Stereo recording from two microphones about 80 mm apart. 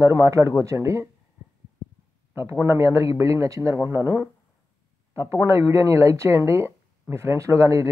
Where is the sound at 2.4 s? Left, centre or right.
Right.